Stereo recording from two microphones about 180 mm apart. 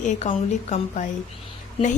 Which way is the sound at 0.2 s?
40° left (ahead or behind).